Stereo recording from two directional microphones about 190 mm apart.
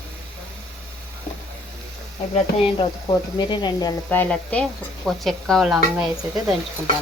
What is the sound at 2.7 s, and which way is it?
Speech, 25° left (ahead or behind).